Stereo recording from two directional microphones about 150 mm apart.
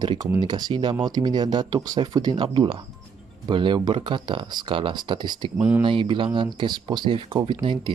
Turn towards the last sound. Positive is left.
turn(degrees=-30)  # may be behind; listen again after turning